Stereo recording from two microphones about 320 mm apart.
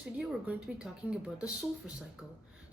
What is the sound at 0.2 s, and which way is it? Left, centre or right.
Speech, centre.